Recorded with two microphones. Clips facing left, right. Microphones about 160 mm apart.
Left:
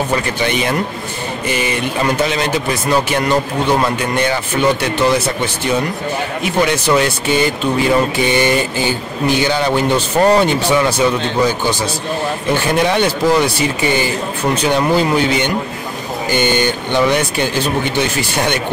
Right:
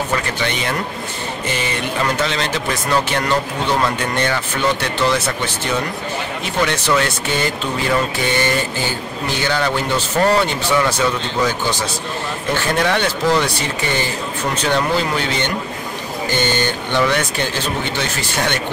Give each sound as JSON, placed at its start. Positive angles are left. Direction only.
{"t": 0.5, "sound": "speech", "side_deg": 15}
{"t": 6.4, "sound": "speech", "side_deg": 10}